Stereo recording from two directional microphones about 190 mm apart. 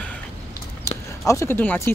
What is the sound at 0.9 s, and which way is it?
Speech, 15° left (ahead or behind).